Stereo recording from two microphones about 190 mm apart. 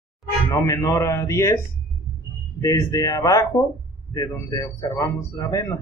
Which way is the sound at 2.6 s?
20° left (ahead or behind).